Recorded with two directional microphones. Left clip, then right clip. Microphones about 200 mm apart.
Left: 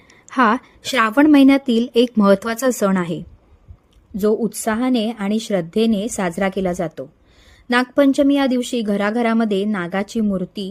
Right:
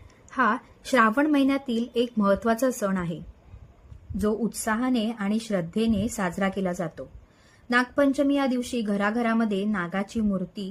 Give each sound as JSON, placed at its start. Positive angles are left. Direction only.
{"t": 0.1, "sound": "a woman's voice", "side_deg": 50}
{"t": 4.2, "sound": "a woman's voice", "side_deg": 45}